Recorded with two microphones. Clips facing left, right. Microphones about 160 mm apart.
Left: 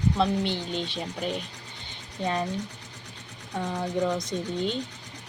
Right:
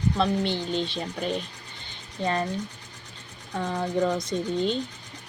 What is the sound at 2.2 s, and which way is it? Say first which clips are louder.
Speech: right 2 dB; 10° left (ahead or behind).